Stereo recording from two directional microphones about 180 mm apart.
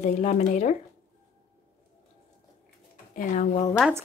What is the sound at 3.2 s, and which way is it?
Speech, 45° left (ahead or behind).